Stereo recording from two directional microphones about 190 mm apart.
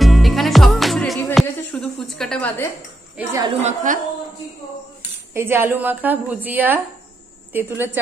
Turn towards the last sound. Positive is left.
turn(degrees=-10)  # may be behind; listen again after turning